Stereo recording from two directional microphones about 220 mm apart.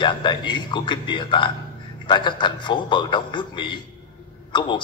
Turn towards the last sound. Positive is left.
turn(degrees=20)  # may be behind; listen again after turning